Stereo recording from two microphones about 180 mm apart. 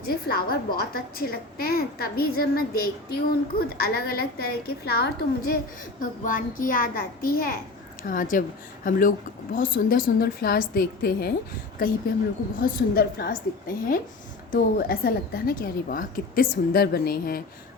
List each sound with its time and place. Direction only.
0.0 s a woman's voice: 55° left (ahead or behind)
6.0 s a woman's voice: 50° left (ahead or behind)